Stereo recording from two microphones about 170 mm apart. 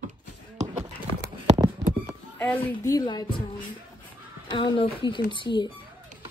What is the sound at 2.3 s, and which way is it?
A woman's voice, 15° left (ahead or behind).